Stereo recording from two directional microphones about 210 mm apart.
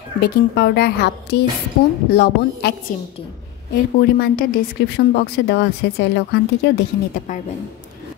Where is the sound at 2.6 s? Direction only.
50° left (ahead or behind).